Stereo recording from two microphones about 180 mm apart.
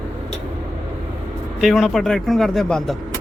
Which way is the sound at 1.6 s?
Centre (ahead or behind).